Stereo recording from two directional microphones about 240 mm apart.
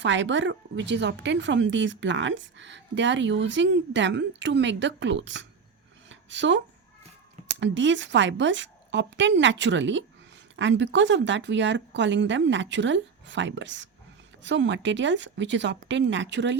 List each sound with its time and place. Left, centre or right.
0.0 s a woman's voice: right
6.1 s a sound: right
7.5 s a woman's voice: right